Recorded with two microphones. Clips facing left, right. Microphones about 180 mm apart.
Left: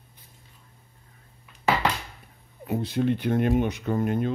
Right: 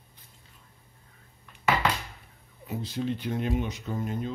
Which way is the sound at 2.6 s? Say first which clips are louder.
Left 6 dB; 60° left (ahead or behind).